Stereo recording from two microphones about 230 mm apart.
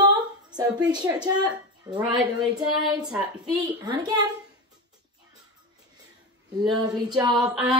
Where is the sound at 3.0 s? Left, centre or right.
Centre.